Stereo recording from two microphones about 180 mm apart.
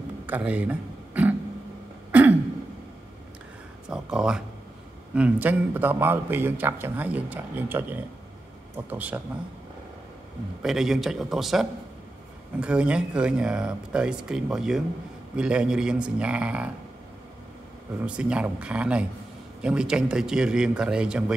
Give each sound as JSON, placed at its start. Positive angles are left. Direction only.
{"t": 0.3, "sound": "a sound", "side_deg": -10}
{"t": 3.8, "sound": "a man's voice", "side_deg": -5}
{"t": 10.6, "sound": "speech", "side_deg": 0}
{"t": 18.0, "sound": "a man's voice", "side_deg": -5}